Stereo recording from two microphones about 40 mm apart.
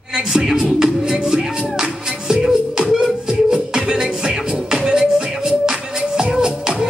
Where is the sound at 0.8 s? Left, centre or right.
Centre.